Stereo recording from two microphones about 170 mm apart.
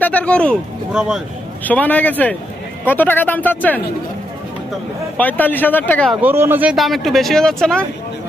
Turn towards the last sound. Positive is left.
turn(degrees=5)  # may be behind; listen again after turning